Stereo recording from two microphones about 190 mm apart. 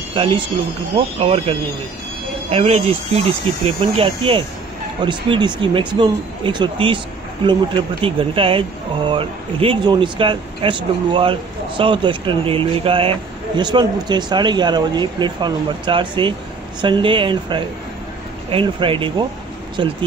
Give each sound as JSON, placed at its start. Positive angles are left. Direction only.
{"t": 0.1, "sound": "speech", "side_deg": -30}
{"t": 8.0, "sound": "speech", "side_deg": -30}